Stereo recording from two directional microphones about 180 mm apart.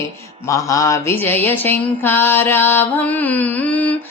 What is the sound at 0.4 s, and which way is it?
Music, 15° left (ahead or behind).